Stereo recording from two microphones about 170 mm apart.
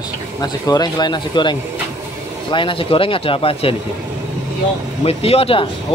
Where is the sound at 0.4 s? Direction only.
20° left (ahead or behind).